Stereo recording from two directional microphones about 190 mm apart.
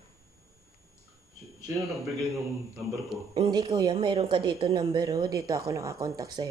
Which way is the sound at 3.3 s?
20° right (ahead or behind).